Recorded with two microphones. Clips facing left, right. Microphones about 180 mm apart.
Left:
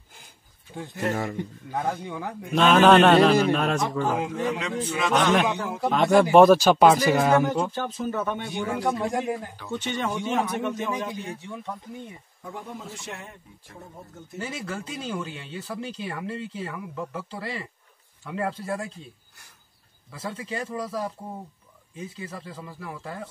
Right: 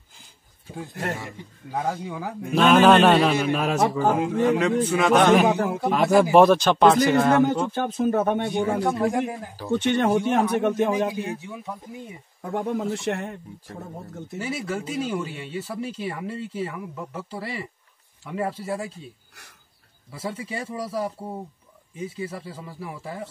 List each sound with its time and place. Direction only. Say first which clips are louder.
1.7 s a man's voice: right 2 dB; centre (ahead or behind)
4.4 s speech: right 7 dB; 55° right (ahead or behind)
5.8 s a man's voice: left 2 dB; 5° right (ahead or behind)
7.8 s speech: right 6 dB; 55° right (ahead or behind)
8.5 s speech: right 5 dB; 30° right (ahead or behind)
8.8 s a man's voice: right 3 dB; centre (ahead or behind)
9.7 s speech: right 8 dB; 60° right (ahead or behind)
11.4 s speech: even; 5° right (ahead or behind)
12.4 s speech: right 12 dB; 70° right (ahead or behind)
14.4 s a man's voice: right 4 dB; 5° right (ahead or behind)
20.1 s speech: right 2 dB; 10° right (ahead or behind)
22.4 s speech: right 2 dB; 10° right (ahead or behind)